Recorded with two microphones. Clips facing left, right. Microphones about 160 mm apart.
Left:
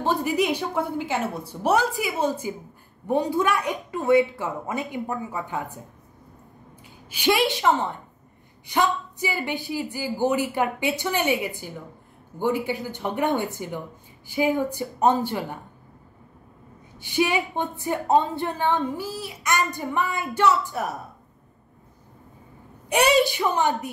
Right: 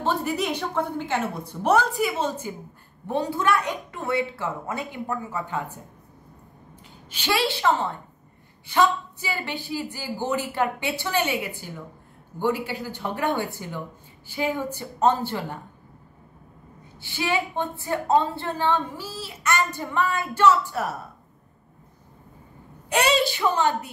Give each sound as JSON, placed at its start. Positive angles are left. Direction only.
{"t": 0.0, "sound": "a woman's voice", "side_deg": 10}
{"t": 7.1, "sound": "a woman's voice", "side_deg": 15}
{"t": 17.0, "sound": "a woman's voice", "side_deg": 15}
{"t": 22.8, "sound": "a woman's voice", "side_deg": 15}